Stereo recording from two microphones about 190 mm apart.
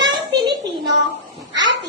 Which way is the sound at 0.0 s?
25° right (ahead or behind).